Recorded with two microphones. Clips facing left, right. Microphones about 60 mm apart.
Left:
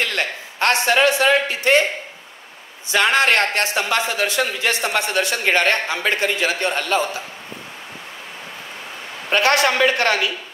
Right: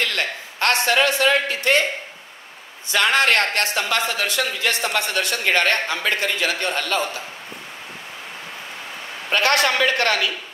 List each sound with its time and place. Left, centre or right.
0.0 s a man's voice: left
2.9 s speech: left
9.3 s speech: left